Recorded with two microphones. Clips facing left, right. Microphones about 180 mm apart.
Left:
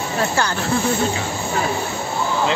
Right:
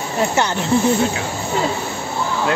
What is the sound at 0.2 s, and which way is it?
Speech, 20° right (ahead or behind).